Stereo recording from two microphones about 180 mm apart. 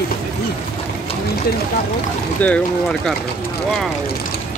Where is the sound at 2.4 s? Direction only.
5° left (ahead or behind).